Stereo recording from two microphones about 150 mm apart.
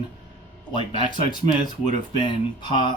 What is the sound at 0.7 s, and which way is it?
Speech, 30° left (ahead or behind).